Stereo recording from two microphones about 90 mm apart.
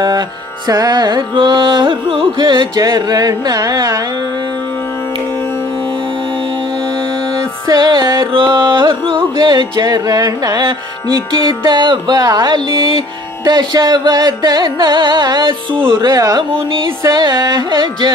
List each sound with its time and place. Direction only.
0.7 s music: 45° right (ahead or behind); by 2.8 s 65° right (ahead or behind)
2.8 s music: 45° right (ahead or behind)
7.7 s music: 55° right (ahead or behind)
9.4 s music: 55° right (ahead or behind)
12.2 s music: 50° right (ahead or behind); by 13.0 s 65° right (ahead or behind)
13.5 s music: 50° right (ahead or behind); by 16.1 s 70° right (ahead or behind)
16.1 s speech: 40° right (ahead or behind)
17.1 s music: 50° right (ahead or behind)